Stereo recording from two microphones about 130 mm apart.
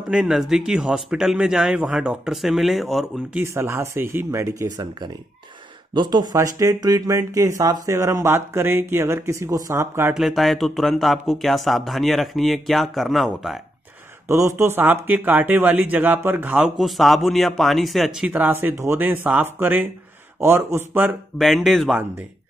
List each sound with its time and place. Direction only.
0.1 s speech: 5° right (ahead or behind)
3.3 s speech: 20° right (ahead or behind)
10.1 s speech: centre (ahead or behind)
14.2 s speech: 20° right (ahead or behind)
21.4 s speech: centre (ahead or behind)